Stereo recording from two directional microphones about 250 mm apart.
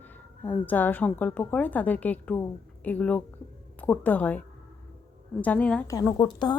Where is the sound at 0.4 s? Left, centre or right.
Centre.